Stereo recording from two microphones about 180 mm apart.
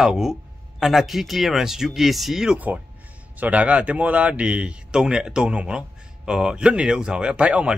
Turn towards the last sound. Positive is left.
turn(degrees=-5)  # may be behind; listen again after turning